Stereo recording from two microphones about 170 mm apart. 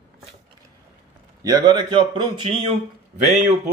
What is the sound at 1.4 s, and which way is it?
Speech, 20° right (ahead or behind).